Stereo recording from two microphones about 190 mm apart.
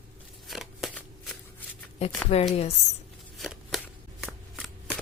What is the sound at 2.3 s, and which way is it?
Speech, 35° left (ahead or behind).